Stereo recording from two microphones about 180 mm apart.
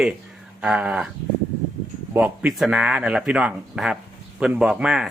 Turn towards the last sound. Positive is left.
turn(degrees=-5)  # may be behind; listen again after turning